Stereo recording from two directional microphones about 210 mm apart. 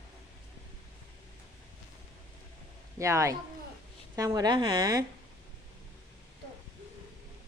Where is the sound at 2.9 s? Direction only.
15° right (ahead or behind).